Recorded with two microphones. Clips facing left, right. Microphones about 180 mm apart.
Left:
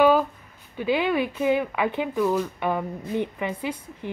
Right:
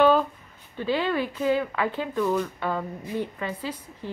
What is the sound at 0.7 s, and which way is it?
Speech, 15° left (ahead or behind).